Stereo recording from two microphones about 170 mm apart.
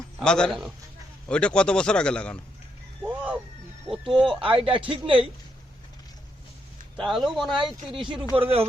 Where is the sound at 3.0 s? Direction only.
10° right (ahead or behind).